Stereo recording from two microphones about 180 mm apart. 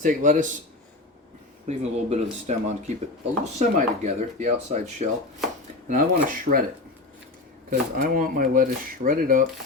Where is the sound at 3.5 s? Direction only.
40° right (ahead or behind).